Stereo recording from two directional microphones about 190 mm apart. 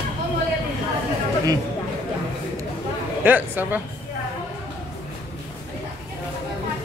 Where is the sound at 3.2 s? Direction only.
10° right (ahead or behind).